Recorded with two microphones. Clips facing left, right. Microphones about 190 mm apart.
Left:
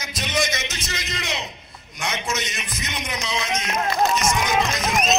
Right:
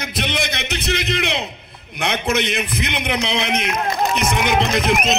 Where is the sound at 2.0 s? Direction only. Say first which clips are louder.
Right 7 dB; 60° right (ahead or behind).